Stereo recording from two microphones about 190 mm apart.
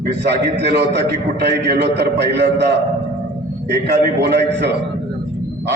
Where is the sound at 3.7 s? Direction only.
60° right (ahead or behind).